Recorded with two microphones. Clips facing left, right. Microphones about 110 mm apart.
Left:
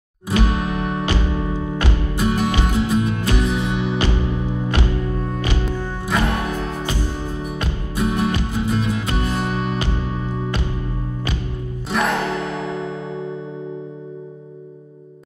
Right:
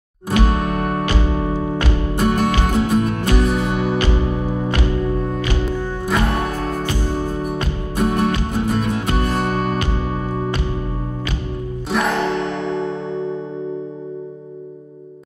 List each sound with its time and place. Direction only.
0.3 s music: 45° right (ahead or behind)
6.6 s music: 50° right (ahead or behind)
11.9 s music: centre (ahead or behind)